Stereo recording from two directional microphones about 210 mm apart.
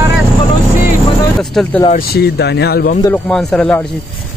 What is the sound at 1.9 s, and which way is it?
Speech, 50° left (ahead or behind).